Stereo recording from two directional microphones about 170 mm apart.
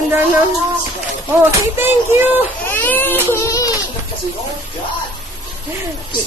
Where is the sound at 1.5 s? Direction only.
15° right (ahead or behind).